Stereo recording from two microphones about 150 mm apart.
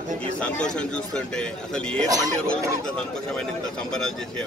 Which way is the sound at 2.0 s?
25° right (ahead or behind).